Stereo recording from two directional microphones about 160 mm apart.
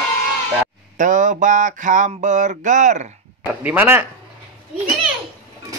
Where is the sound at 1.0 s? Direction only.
50° right (ahead or behind).